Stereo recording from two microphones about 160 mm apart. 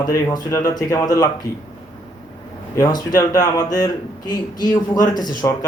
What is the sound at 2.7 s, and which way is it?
Speech, 25° left (ahead or behind).